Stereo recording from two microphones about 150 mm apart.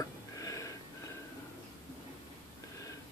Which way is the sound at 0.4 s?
20° left (ahead or behind).